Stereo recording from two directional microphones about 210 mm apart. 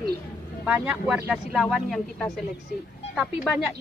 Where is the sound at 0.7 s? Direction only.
10° right (ahead or behind).